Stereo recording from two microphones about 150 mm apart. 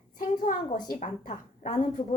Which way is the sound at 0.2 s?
60° left (ahead or behind).